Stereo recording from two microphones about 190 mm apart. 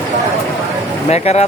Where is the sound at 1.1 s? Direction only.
35° left (ahead or behind).